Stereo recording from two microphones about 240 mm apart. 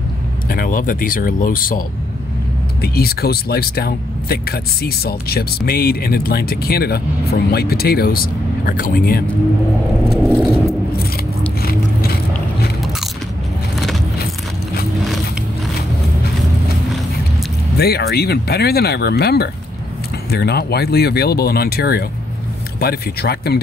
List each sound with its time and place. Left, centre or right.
0.5 s speech: left
10.0 s vehicle: centre
11.6 s biting: left
13.7 s vehicle: centre
17.7 s speech: left